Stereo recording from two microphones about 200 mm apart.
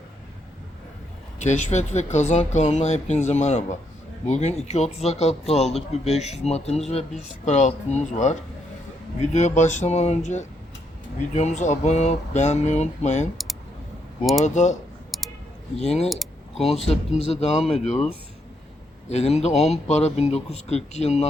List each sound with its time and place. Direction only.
1.5 s speech: 35° left (ahead or behind)
14.4 s speech: 35° left (ahead or behind)
15.1 s a sound: centre (ahead or behind)
15.8 s speech: 30° left (ahead or behind)
16.0 s a sound: centre (ahead or behind)
17.2 s speech: 30° left (ahead or behind)
19.1 s speech: 30° left (ahead or behind)